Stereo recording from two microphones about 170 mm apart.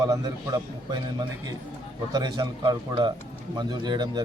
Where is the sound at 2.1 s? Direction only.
25° right (ahead or behind).